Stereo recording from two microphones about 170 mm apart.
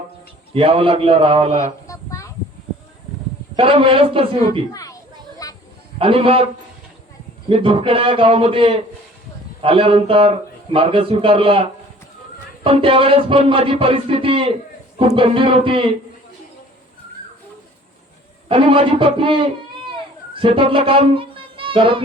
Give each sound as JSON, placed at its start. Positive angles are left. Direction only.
{"t": 0.5, "sound": "a man's voice", "side_deg": -30}
{"t": 1.9, "sound": "a sound", "side_deg": 20}
{"t": 3.5, "sound": "a man's voice", "side_deg": -30}
{"t": 4.7, "sound": "speech", "side_deg": 20}
{"t": 5.4, "sound": "a sound", "side_deg": 20}
{"t": 6.0, "sound": "a man's voice", "side_deg": -30}
{"t": 7.5, "sound": "a man's voice", "side_deg": -35}
{"t": 18.4, "sound": "a man's voice", "side_deg": -30}